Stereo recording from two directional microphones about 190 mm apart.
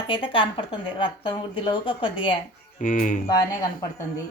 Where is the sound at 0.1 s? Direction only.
25° left (ahead or behind).